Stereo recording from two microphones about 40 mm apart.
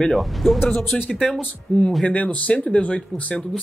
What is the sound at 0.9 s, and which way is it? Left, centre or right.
Speech, centre.